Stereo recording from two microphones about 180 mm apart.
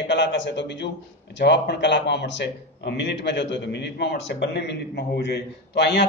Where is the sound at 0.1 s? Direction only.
75° left (ahead or behind).